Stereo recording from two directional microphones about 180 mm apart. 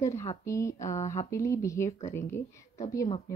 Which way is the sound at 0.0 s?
15° left (ahead or behind).